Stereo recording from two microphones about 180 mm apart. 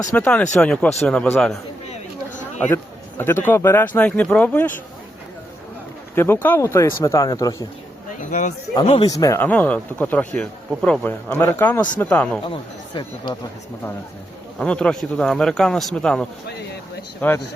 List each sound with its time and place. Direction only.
0.1 s speech: 10° left (ahead or behind)
2.6 s a man's voice: 15° left (ahead or behind)
6.1 s speech: 15° left (ahead or behind)
8.3 s a man's voice: 45° left (ahead or behind)
8.7 s speech: 30° left (ahead or behind); by 12.4 s 5° left (ahead or behind)
12.5 s speech: 25° left (ahead or behind)
14.6 s speech: 5° left (ahead or behind)